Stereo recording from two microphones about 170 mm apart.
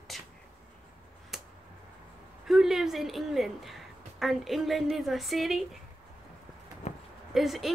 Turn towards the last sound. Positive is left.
turn(degrees=0)  # may be behind; listen again after turning